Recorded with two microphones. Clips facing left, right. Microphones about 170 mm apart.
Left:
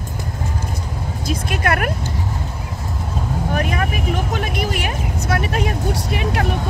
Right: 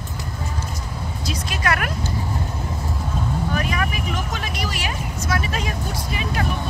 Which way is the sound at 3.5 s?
55° left (ahead or behind).